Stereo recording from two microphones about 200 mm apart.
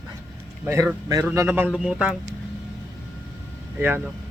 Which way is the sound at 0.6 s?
15° right (ahead or behind).